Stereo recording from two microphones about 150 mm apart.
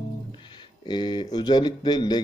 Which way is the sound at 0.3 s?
30° left (ahead or behind).